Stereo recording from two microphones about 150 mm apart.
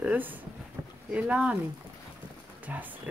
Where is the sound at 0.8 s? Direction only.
15° right (ahead or behind).